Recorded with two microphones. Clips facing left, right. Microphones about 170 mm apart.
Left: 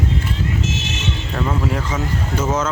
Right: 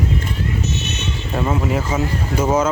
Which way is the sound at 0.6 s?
90° left.